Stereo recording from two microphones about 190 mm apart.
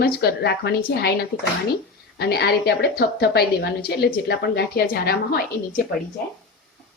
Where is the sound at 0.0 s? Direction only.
55° left (ahead or behind).